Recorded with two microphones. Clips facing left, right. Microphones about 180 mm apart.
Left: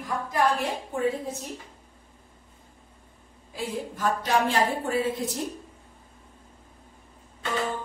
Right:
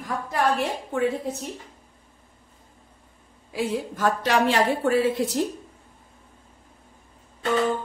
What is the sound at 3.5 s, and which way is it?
A woman's voice, 75° right (ahead or behind).